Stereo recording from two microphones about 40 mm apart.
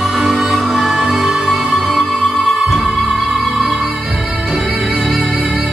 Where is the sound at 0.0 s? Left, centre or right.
Centre.